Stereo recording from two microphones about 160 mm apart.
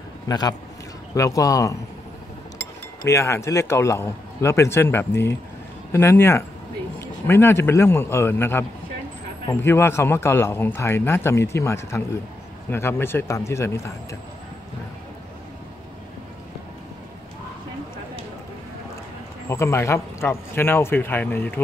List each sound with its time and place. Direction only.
0.3 s speech: 25° left (ahead or behind)
3.1 s speech: 20° left (ahead or behind)
19.5 s speech: 15° left (ahead or behind)